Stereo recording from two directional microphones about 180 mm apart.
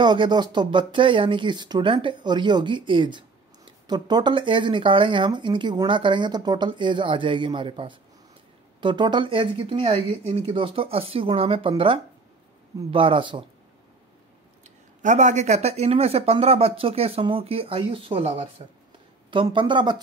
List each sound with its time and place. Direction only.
0.0 s speech: 25° right (ahead or behind)
14.6 s speech: 45° right (ahead or behind); by 20.0 s 25° right (ahead or behind)